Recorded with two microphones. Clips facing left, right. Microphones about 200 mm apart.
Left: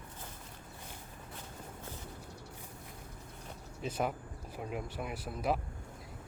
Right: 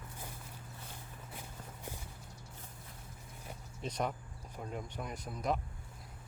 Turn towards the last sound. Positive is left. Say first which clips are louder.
# left 2 dB
turn(degrees=5)  # may be behind; listen again after turning